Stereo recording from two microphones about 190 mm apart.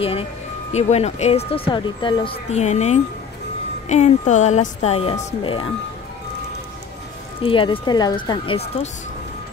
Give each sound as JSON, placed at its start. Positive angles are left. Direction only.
{"t": 0.0, "sound": "speech", "side_deg": 30}
{"t": 7.4, "sound": "speech", "side_deg": 30}